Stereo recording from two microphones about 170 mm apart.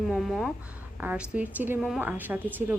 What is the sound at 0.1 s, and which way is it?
A woman's voice, centre (ahead or behind).